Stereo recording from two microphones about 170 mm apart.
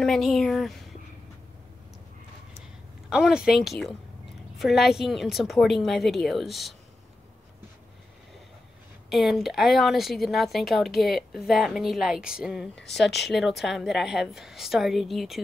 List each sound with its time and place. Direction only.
0.0 s a woman's voice: centre (ahead or behind)
3.1 s a woman's voice: 5° right (ahead or behind)
9.1 s a woman's voice: centre (ahead or behind)
13.0 s speech: 85° left
13.3 s a woman's voice: centre (ahead or behind)